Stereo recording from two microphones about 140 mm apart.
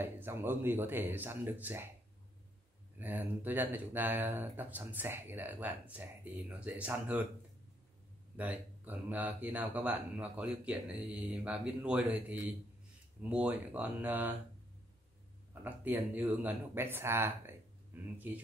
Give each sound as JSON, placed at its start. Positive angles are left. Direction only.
{"t": 0.0, "sound": "speech", "side_deg": -15}
{"t": 3.0, "sound": "speech", "side_deg": -15}
{"t": 8.4, "sound": "speech", "side_deg": -10}
{"t": 15.6, "sound": "speech", "side_deg": -15}